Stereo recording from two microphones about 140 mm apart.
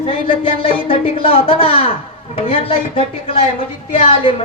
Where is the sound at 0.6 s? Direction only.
40° left (ahead or behind).